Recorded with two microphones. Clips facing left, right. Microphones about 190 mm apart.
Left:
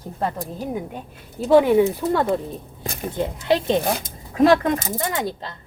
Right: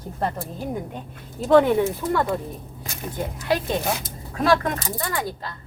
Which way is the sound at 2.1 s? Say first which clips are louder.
Left 3 dB; 20° left (ahead or behind).